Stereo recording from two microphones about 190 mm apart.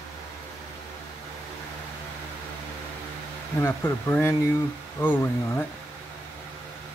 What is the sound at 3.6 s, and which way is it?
Speech, 15° left (ahead or behind).